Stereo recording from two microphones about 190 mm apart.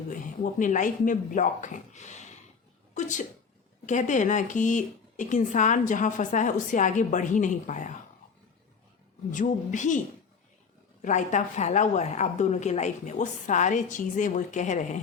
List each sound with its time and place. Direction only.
0.6 s speech: 40° left (ahead or behind)
9.3 s speech: 40° left (ahead or behind)
11.0 s speech: 40° left (ahead or behind)